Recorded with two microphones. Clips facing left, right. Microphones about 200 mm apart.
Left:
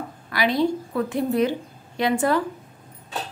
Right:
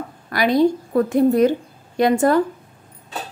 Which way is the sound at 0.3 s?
45° right (ahead or behind).